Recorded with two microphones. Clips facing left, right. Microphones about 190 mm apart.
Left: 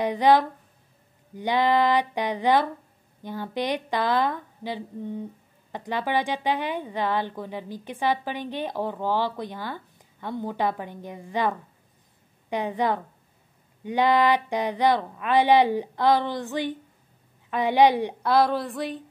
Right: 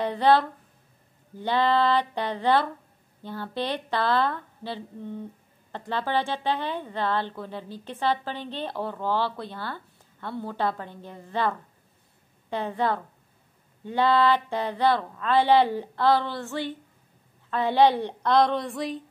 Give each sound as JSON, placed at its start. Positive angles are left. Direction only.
{"t": 0.0, "sound": "speech", "side_deg": 15}